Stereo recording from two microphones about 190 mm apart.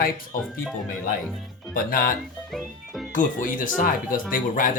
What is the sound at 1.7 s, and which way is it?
Speech, 50° left (ahead or behind).